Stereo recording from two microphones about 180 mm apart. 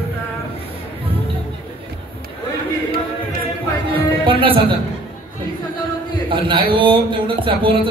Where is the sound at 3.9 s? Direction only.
30° right (ahead or behind).